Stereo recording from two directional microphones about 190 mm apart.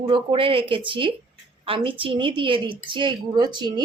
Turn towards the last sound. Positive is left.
turn(degrees=-25)  # may be behind; listen again after turning